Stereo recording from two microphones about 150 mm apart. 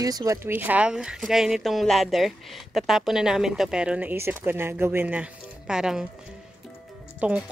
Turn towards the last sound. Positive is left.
turn(degrees=-10)  # may be behind; listen again after turning